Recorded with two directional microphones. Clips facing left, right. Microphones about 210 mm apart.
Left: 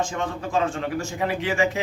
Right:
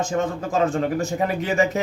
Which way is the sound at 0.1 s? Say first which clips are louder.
Right 3 dB; 40° right (ahead or behind).